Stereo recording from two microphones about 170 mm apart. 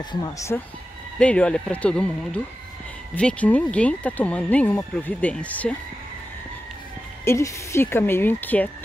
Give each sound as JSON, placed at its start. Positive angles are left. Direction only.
{"t": 0.1, "sound": "speech", "side_deg": 20}
{"t": 1.2, "sound": "speech", "side_deg": 5}
{"t": 7.2, "sound": "speech", "side_deg": 15}